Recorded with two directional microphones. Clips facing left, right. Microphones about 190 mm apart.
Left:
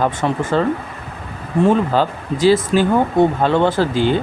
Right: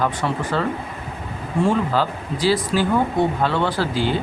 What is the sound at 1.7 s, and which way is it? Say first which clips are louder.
Speech: left 5 dB; 20° left (ahead or behind).